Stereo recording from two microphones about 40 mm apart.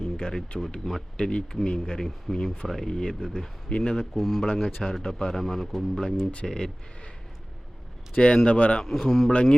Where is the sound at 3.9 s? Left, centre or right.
Centre.